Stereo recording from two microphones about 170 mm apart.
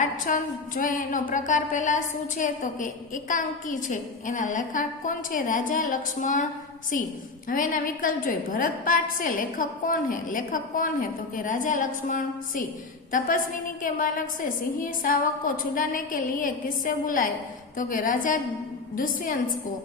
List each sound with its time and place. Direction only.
0.3 s a woman's voice: 50° left (ahead or behind)
7.5 s a woman's voice: 50° left (ahead or behind)